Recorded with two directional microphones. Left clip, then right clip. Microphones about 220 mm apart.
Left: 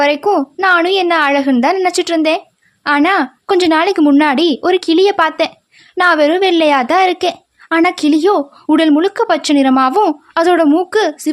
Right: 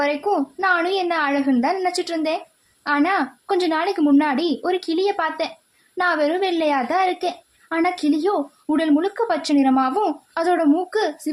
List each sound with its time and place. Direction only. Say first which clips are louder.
0.0 s a woman's voice: left 8 dB; 40° left (ahead or behind)